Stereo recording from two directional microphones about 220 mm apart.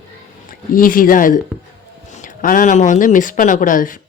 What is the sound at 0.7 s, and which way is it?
Speech, 40° left (ahead or behind).